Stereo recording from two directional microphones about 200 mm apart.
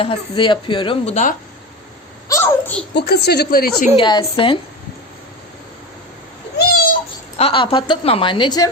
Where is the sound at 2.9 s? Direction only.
55° left (ahead or behind).